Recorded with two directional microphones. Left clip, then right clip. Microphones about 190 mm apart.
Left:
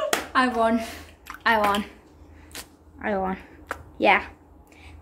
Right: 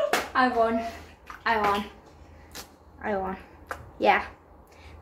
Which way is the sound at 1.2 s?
50° left (ahead or behind).